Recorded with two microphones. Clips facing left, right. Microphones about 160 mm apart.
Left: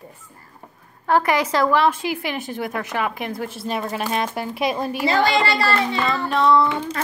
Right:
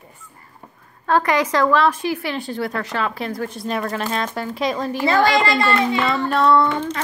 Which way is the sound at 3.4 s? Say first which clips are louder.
Right 2 dB; 5° left (ahead or behind).